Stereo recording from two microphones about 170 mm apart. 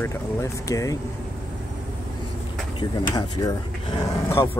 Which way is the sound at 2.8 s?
25° left (ahead or behind).